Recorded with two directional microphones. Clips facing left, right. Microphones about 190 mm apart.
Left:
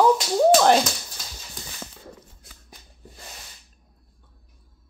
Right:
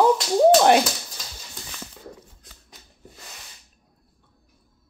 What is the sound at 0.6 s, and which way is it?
Speech, 10° right (ahead or behind).